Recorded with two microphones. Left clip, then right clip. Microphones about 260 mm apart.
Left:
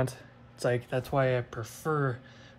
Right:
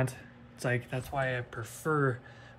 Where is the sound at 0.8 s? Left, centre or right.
Centre.